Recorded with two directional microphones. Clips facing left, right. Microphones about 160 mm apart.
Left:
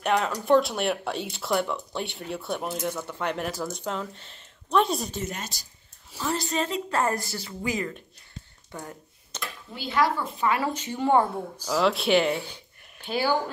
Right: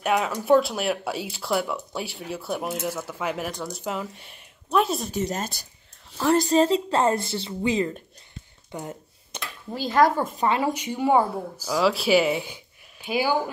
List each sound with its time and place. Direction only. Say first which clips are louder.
0.0 s speech: right 1 dB; 5° right (ahead or behind)
5.2 s speech: right 6 dB; 40° right (ahead or behind)
6.1 s a woman's voice: right 9 dB; 55° right (ahead or behind)
6.5 s a woman's voice: right 7 dB; 30° right (ahead or behind)
8.7 s a sound: right 4 dB; 15° right (ahead or behind)
9.7 s speech: right 5 dB; 45° right (ahead or behind)
10.6 s speech: right 3 dB; 15° right (ahead or behind)